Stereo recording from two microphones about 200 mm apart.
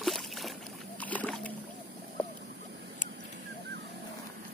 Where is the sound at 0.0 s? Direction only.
Centre (ahead or behind).